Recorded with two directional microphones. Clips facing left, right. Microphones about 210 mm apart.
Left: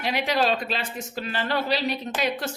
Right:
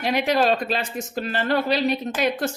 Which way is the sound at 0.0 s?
45° right (ahead or behind).